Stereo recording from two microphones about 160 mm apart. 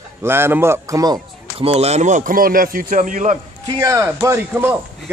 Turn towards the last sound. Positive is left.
turn(degrees=-15)  # may be behind; listen again after turning